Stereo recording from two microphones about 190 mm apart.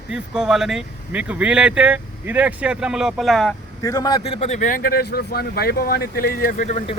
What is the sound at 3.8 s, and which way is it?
Speech, 20° left (ahead or behind).